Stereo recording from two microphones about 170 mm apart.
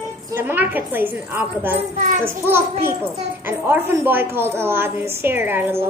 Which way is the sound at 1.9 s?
45° right (ahead or behind).